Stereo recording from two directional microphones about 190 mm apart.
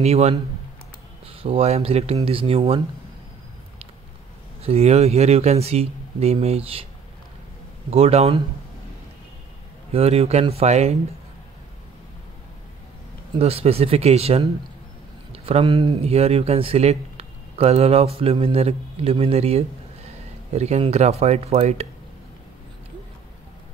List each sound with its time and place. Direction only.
0.0 s speech: 35° right (ahead or behind)
4.6 s speech: 35° right (ahead or behind)
7.9 s speech: 35° right (ahead or behind)
9.9 s speech: 30° right (ahead or behind)
13.4 s speech: 30° right (ahead or behind)